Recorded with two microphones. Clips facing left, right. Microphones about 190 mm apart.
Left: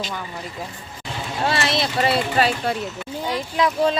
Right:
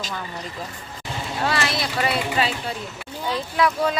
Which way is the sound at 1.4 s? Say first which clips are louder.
Left 3 dB; 25° left (ahead or behind).